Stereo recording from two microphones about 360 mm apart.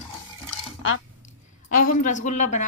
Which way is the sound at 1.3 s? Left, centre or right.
Left.